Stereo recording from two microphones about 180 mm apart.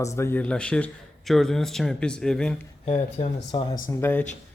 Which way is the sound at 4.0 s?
10° left (ahead or behind).